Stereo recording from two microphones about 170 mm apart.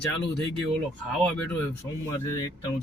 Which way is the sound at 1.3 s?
10° left (ahead or behind).